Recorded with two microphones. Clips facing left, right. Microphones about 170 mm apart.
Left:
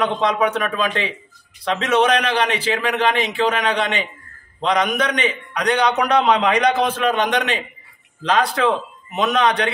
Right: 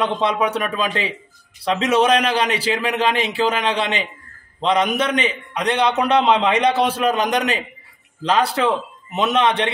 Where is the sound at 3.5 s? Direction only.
30° right (ahead or behind).